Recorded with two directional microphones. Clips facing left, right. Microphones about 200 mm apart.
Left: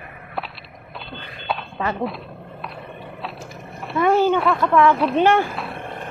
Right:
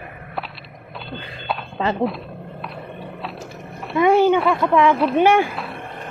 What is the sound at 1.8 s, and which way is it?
Speech, 25° right (ahead or behind).